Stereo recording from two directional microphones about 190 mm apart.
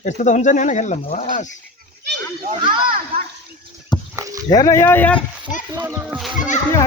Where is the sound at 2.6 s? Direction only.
25° right (ahead or behind).